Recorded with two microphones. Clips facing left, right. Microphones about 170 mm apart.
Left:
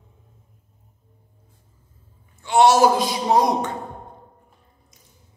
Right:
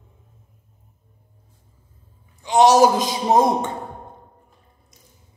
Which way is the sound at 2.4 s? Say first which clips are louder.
Right 1 dB; 15° right (ahead or behind).